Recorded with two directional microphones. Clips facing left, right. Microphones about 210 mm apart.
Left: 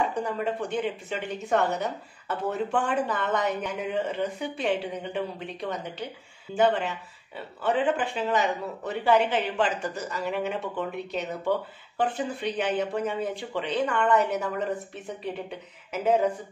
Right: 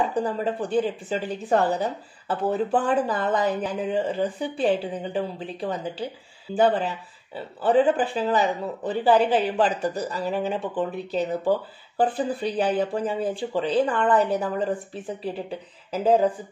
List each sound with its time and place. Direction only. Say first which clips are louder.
0.1 s a woman's voice: right 3 dB; 35° right (ahead or behind)